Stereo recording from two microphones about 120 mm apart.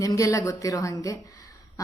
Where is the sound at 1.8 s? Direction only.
30° left (ahead or behind).